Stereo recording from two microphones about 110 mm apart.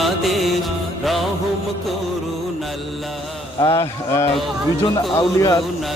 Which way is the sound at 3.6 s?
25° left (ahead or behind).